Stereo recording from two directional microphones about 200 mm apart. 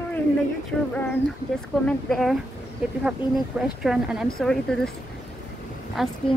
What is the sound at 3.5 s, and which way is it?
Speech, 10° right (ahead or behind).